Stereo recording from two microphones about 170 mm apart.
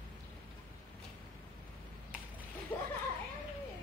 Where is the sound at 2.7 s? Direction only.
10° left (ahead or behind).